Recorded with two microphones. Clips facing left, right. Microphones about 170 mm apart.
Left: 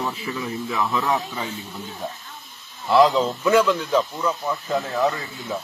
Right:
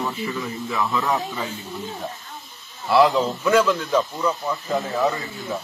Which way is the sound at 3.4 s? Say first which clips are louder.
Left 1 dB; 15° left (ahead or behind).